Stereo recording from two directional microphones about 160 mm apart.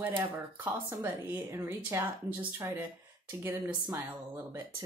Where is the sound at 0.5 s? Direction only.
10° right (ahead or behind).